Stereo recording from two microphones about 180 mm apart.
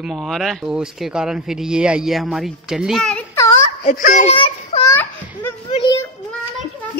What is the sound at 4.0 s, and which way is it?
Speech, 45° left (ahead or behind).